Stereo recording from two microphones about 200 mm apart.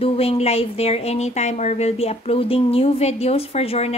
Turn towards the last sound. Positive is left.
turn(degrees=30)  # may be behind; listen again after turning